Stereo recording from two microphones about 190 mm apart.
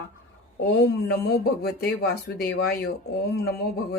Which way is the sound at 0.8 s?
60° left (ahead or behind).